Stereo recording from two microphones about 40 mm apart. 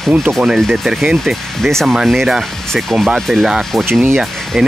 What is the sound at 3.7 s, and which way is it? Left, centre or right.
Speech, centre.